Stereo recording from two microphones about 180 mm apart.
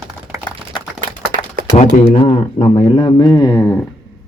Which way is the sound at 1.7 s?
40° left (ahead or behind).